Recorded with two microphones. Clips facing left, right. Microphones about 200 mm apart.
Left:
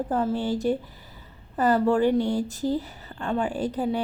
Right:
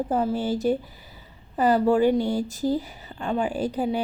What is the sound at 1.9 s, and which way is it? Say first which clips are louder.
Speech: right 2 dB; 15° right (ahead or behind).